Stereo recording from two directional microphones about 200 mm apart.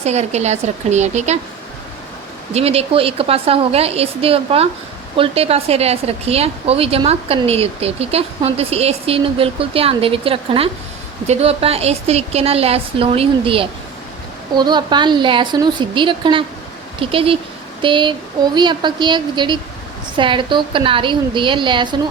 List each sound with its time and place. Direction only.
0.0 s speech: 35° right (ahead or behind)
2.5 s a woman's voice: 30° right (ahead or behind)